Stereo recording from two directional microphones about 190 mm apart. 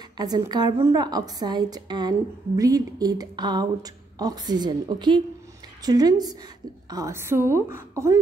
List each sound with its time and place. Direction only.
0.2 s a woman's voice: 20° right (ahead or behind)